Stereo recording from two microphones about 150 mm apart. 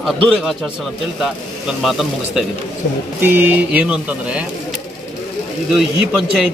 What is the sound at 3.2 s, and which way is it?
Speech, 15° right (ahead or behind).